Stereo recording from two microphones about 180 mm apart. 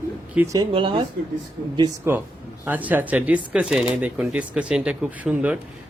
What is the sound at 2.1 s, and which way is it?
Speech, 15° right (ahead or behind).